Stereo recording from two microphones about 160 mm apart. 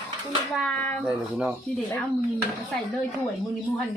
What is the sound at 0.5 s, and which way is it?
Speech, centre (ahead or behind).